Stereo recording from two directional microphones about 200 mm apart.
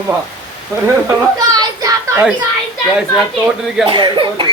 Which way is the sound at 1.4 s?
20° right (ahead or behind).